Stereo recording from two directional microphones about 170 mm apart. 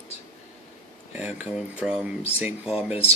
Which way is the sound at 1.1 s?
10° right (ahead or behind).